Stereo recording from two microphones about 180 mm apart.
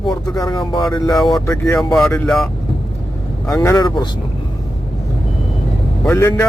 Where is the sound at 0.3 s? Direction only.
20° left (ahead or behind).